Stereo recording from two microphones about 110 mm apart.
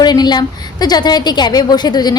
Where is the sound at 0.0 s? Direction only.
40° left (ahead or behind).